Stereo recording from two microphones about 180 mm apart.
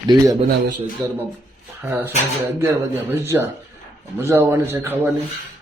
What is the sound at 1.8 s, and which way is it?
A man's voice, 10° right (ahead or behind).